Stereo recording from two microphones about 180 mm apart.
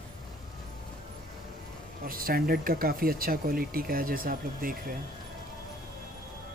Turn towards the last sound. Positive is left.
turn(degrees=-55)  # may be behind; listen again after turning